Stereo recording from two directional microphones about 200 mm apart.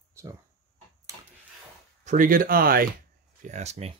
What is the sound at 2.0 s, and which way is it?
Speech, 40° right (ahead or behind).